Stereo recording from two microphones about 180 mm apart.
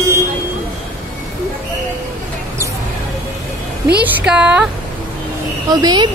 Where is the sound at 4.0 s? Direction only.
10° right (ahead or behind).